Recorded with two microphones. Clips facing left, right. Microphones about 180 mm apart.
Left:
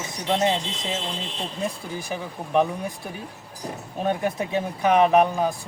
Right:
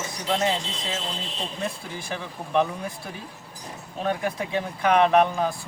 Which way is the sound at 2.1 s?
15° left (ahead or behind).